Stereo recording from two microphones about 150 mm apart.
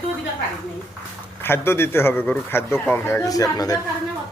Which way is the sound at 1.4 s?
15° left (ahead or behind).